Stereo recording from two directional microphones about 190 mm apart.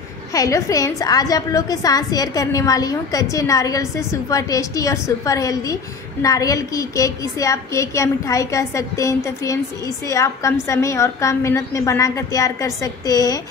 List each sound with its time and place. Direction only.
0.3 s a woman's voice: 15° left (ahead or behind)